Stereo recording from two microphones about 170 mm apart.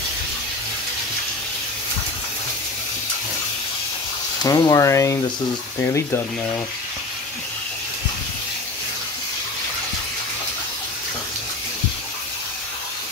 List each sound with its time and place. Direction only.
4.4 s speech: 20° left (ahead or behind)